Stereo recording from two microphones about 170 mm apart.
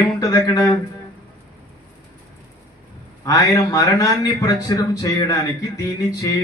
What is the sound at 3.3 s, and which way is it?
A man's voice, 20° left (ahead or behind).